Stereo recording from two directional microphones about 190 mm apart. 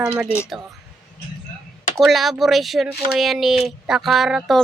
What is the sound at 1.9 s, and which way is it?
Speech, centre (ahead or behind).